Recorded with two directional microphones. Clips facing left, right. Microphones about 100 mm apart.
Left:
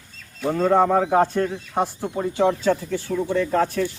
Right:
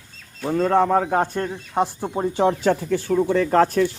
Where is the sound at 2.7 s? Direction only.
75° right (ahead or behind).